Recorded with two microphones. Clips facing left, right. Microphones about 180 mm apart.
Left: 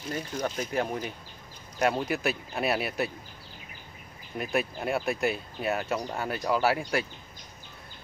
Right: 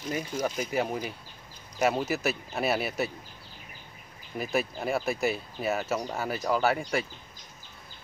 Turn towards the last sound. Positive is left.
turn(degrees=0)  # may be behind; listen again after turning